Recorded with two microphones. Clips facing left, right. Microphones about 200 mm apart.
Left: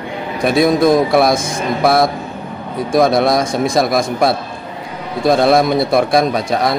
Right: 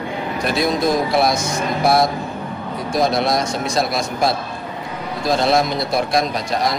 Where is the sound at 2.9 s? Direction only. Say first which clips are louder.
Left 6 dB; 55° left (ahead or behind).